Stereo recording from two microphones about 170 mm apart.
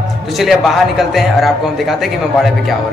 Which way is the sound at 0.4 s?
Centre (ahead or behind).